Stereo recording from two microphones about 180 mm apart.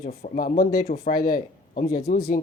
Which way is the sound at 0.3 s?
55° left (ahead or behind).